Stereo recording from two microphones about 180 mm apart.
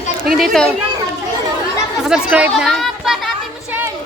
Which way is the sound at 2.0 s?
5° right (ahead or behind).